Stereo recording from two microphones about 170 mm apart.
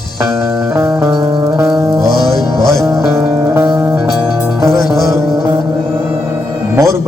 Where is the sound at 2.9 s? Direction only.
20° right (ahead or behind).